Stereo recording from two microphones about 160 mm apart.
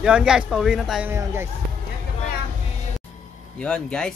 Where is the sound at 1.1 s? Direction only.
15° right (ahead or behind).